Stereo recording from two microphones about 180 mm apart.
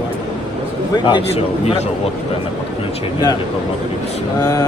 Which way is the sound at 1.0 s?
30° left (ahead or behind).